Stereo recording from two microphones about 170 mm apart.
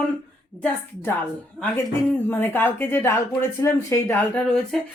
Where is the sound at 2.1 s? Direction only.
15° left (ahead or behind).